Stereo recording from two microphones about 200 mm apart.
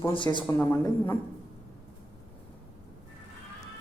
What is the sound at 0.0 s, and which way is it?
Speech, 20° left (ahead or behind).